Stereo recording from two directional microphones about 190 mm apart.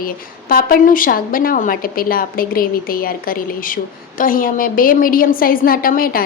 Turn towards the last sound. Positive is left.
turn(degrees=50)  # may be behind; listen again after turning